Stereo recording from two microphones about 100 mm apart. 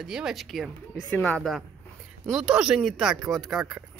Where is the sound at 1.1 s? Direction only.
15° left (ahead or behind).